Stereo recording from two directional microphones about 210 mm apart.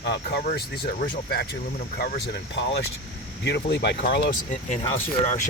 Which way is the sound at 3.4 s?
55° left (ahead or behind).